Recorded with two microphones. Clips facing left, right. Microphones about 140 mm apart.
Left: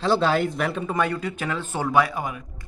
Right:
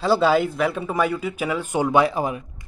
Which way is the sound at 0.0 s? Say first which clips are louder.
Right 3 dB; 5° right (ahead or behind).